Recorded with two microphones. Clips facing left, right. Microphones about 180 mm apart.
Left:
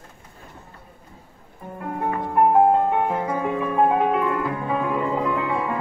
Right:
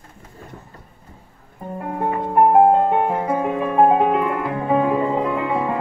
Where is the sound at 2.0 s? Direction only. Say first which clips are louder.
Right 3 dB; 25° right (ahead or behind).